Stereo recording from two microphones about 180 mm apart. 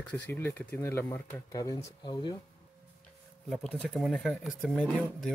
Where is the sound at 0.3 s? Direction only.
10° left (ahead or behind).